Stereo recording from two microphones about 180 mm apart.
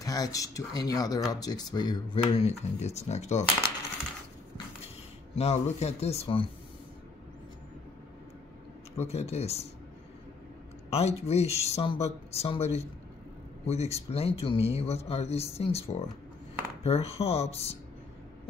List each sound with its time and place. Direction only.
0.0 s speech: 20° left (ahead or behind); by 3.4 s 40° left (ahead or behind)
5.3 s speech: 35° left (ahead or behind)
8.9 s speech: 35° left (ahead or behind)
10.9 s speech: 35° left (ahead or behind)